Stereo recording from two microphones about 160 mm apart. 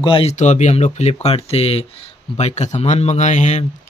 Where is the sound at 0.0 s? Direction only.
35° left (ahead or behind).